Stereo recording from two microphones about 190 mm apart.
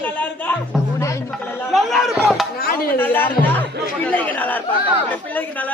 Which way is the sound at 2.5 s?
50° left (ahead or behind).